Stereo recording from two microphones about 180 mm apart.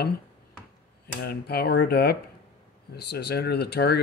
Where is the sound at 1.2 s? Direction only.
60° left (ahead or behind).